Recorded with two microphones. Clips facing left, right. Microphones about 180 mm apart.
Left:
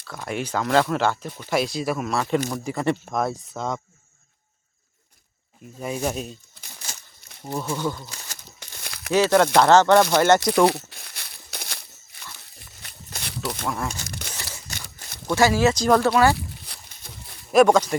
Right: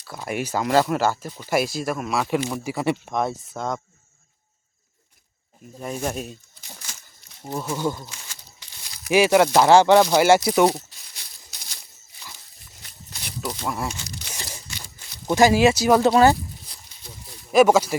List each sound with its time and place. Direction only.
0.1 s speech: 10° right (ahead or behind)
5.8 s speech: 5° left (ahead or behind)
7.4 s speech: 5° right (ahead or behind)
7.8 s speech: 15° right (ahead or behind)
8.1 s crumpling: 45° left (ahead or behind); by 9.1 s 65° left (ahead or behind)
9.1 s speech: 10° right (ahead or behind)
10.7 s crumpling: 65° left (ahead or behind)
12.5 s a sound: 65° left (ahead or behind)
13.7 s speech: 5° right (ahead or behind)
14.9 s a sound: 45° left (ahead or behind)
15.3 s speech: 15° right (ahead or behind)
16.0 s speech: 20° right (ahead or behind)
16.6 s a sound: 60° left (ahead or behind)
17.5 s speech: 5° right (ahead or behind)